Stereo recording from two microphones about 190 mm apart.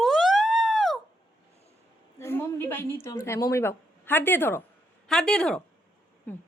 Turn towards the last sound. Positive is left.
turn(degrees=5)  # may be behind; listen again after turning